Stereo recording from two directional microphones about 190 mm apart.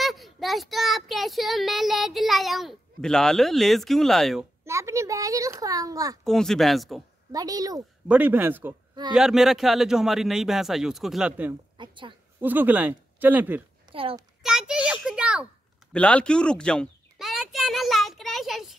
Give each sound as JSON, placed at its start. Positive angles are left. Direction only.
{"t": 0.0, "sound": "speech", "side_deg": 0}
{"t": 4.6, "sound": "a child's voice", "side_deg": -15}
{"t": 6.2, "sound": "speech", "side_deg": 0}
{"t": 7.3, "sound": "a child's voice", "side_deg": -20}
{"t": 11.7, "sound": "a woman's voice", "side_deg": -25}
{"t": 12.4, "sound": "speech", "side_deg": -10}
{"t": 13.9, "sound": "speech", "side_deg": -30}
{"t": 14.4, "sound": "speech", "side_deg": -5}
{"t": 15.9, "sound": "a sound", "side_deg": 5}